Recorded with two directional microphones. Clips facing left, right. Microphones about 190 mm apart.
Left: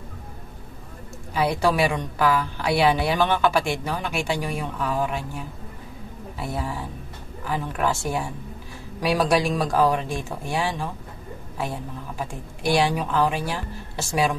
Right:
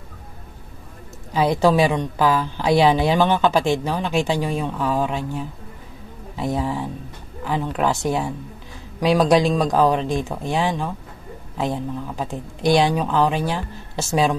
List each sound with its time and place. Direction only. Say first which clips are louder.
1.6 s a woman's voice: right 6 dB; 20° right (ahead or behind)
6.3 s a woman's voice: right 7 dB; 20° right (ahead or behind)